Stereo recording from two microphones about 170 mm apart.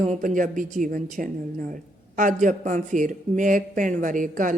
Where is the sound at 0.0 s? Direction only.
45° right (ahead or behind).